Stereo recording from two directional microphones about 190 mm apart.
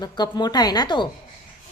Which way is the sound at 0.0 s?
20° left (ahead or behind).